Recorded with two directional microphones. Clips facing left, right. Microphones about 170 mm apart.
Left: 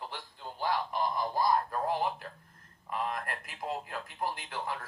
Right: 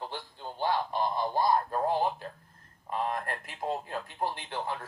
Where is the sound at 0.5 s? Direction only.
30° right (ahead or behind).